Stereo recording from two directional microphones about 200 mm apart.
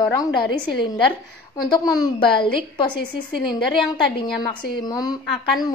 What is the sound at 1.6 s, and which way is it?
A woman's voice, 20° left (ahead or behind).